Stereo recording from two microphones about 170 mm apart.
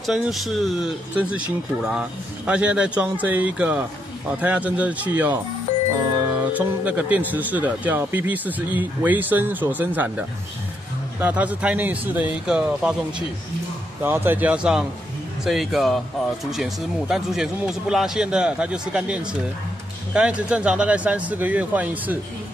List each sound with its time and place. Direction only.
0.0 s speech: centre (ahead or behind)
5.7 s music: 40° left (ahead or behind)
6.9 s speech: 10° right (ahead or behind)
14.0 s speech: 10° right (ahead or behind)